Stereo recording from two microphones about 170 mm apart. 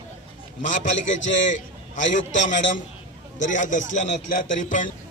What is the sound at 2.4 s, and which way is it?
A man's voice, 45° left (ahead or behind).